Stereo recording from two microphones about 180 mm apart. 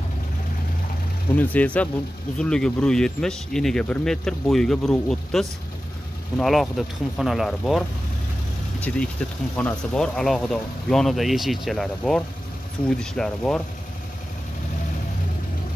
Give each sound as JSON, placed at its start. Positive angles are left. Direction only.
{"t": 1.3, "sound": "speech", "side_deg": 10}
{"t": 8.9, "sound": "speech", "side_deg": 5}